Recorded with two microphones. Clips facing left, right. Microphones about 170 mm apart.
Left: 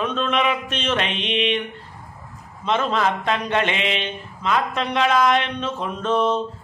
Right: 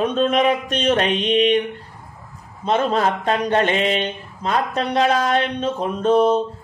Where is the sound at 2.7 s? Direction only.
40° right (ahead or behind).